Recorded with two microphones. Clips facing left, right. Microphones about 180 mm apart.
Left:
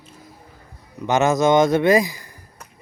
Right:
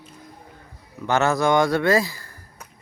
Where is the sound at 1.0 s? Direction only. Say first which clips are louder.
Left 3 dB; 20° left (ahead or behind).